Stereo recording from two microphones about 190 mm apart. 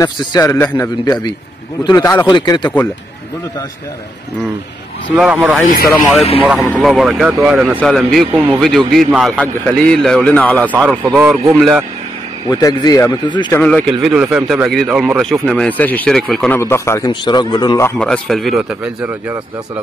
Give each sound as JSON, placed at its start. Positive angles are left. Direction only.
{"t": 0.0, "sound": "a man's voice", "side_deg": 20}
{"t": 5.1, "sound": "speech", "side_deg": -5}
{"t": 10.7, "sound": "speech", "side_deg": -5}
{"t": 12.4, "sound": "speech", "side_deg": 20}
{"t": 13.6, "sound": "speech", "side_deg": 5}
{"t": 14.1, "sound": "speech", "side_deg": -5}